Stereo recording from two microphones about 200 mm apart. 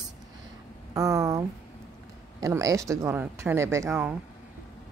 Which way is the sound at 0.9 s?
15° right (ahead or behind).